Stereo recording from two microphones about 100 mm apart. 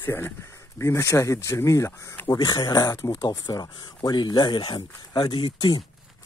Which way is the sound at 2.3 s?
40° left (ahead or behind).